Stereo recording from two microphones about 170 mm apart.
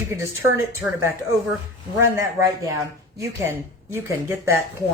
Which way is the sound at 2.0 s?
20° right (ahead or behind).